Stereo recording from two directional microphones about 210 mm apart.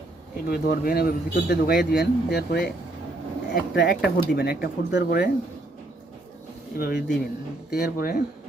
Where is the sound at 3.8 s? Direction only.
50° left (ahead or behind).